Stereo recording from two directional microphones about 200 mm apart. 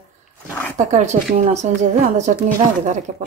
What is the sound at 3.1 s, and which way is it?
Speech, 35° right (ahead or behind).